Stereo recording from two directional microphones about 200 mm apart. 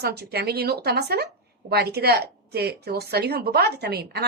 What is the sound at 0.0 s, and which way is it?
Speech, 55° right (ahead or behind).